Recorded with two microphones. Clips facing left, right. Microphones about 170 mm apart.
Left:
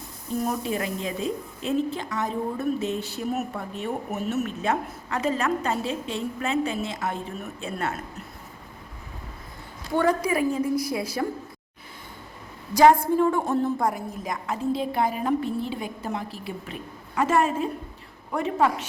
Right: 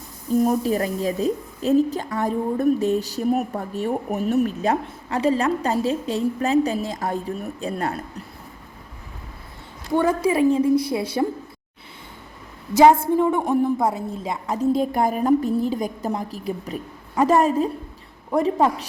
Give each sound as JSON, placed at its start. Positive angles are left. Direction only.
{"t": 0.4, "sound": "a woman's voice", "side_deg": -40}
{"t": 10.2, "sound": "a woman's voice", "side_deg": -25}
{"t": 12.7, "sound": "a woman's voice", "side_deg": -25}
{"t": 13.8, "sound": "a woman's voice", "side_deg": -25}